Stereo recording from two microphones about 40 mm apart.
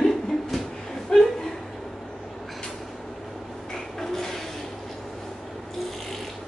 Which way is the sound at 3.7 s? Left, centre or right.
Centre.